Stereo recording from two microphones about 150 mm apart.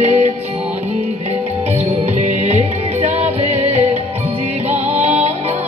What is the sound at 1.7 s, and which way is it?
Music, 50° right (ahead or behind).